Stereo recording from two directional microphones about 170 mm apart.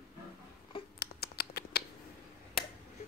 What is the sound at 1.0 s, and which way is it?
Typing, 70° left (ahead or behind).